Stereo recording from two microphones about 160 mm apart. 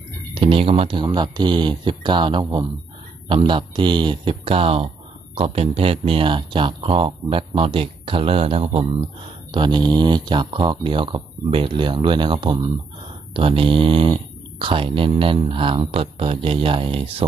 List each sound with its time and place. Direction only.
0.3 s speech: 35° right (ahead or behind)